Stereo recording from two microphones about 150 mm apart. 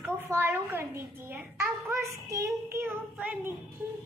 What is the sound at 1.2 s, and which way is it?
A child's voice, 15° right (ahead or behind).